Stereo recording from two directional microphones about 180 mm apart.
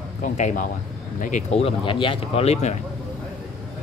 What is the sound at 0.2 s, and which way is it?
Speech, 45° left (ahead or behind).